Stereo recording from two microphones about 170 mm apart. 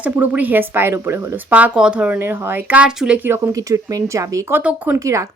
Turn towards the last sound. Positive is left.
turn(degrees=-15)  # may be behind; listen again after turning